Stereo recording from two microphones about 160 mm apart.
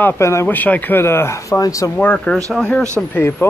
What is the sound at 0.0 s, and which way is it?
Speech, 15° left (ahead or behind).